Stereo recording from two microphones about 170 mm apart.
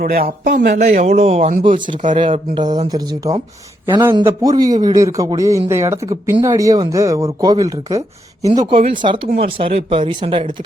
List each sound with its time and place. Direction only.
0.0 s speech: 60° right (ahead or behind)
0.7 s speech: 45° right (ahead or behind)